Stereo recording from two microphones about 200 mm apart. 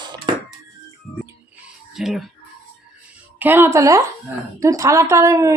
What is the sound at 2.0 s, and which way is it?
Speech, centre (ahead or behind).